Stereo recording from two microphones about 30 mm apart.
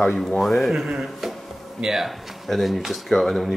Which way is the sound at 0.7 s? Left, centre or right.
Centre.